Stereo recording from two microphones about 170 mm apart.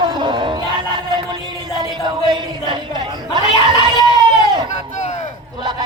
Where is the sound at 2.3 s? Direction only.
25° right (ahead or behind).